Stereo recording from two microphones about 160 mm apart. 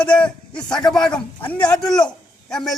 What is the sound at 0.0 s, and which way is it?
Speech, 5° left (ahead or behind).